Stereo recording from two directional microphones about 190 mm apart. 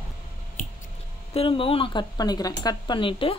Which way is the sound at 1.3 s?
30° left (ahead or behind).